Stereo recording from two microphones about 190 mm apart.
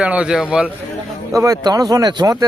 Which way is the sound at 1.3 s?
15° right (ahead or behind).